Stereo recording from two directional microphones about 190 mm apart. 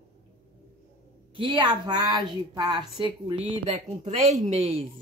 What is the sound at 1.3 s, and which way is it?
A woman's voice, 25° right (ahead or behind).